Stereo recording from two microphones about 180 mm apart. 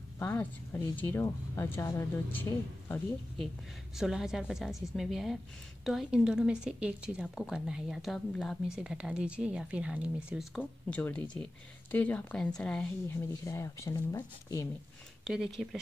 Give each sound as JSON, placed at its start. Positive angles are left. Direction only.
{"t": 0.2, "sound": "a woman's voice", "side_deg": 15}
{"t": 3.9, "sound": "a woman's voice", "side_deg": 0}
{"t": 10.6, "sound": "a woman's voice", "side_deg": 10}
{"t": 13.3, "sound": "a woman's voice", "side_deg": 20}
{"t": 15.2, "sound": "a woman's voice", "side_deg": 0}